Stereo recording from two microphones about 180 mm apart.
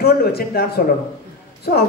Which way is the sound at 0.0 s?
60° left (ahead or behind).